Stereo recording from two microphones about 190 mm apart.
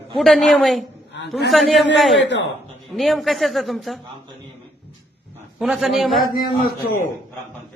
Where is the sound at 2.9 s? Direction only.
Centre (ahead or behind).